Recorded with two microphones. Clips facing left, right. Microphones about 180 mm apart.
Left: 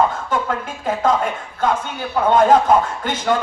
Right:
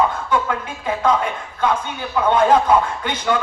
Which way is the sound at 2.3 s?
45° left (ahead or behind).